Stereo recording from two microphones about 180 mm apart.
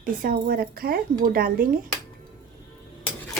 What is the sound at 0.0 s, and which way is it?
A woman's voice, 50° right (ahead or behind).